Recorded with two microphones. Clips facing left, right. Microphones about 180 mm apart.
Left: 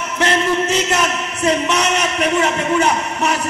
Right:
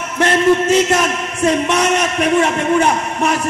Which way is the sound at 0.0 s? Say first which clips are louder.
Right 4 dB; 50° right (ahead or behind).